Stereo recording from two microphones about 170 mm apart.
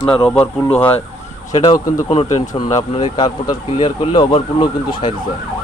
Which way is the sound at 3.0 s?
25° left (ahead or behind).